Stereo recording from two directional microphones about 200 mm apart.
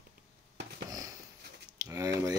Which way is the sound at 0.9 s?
20° right (ahead or behind).